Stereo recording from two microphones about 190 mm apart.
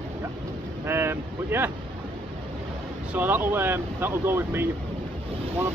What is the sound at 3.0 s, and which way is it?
Speech, 10° right (ahead or behind).